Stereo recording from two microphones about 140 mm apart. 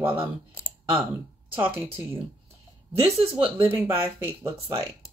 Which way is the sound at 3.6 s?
15° right (ahead or behind).